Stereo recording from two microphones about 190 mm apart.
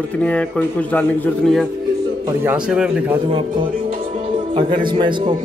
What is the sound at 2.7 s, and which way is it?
Speech, 5° right (ahead or behind).